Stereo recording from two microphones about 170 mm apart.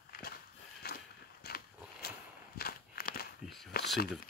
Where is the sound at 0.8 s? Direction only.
70° left (ahead or behind).